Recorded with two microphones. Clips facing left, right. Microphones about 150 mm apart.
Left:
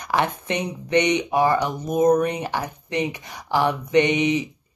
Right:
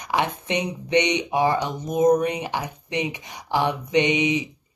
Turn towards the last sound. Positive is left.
turn(degrees=-15)  # may be behind; listen again after turning